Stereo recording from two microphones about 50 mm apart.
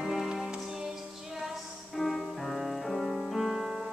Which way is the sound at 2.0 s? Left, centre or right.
Centre.